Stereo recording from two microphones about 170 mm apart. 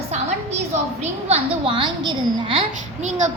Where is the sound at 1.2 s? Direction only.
35° right (ahead or behind).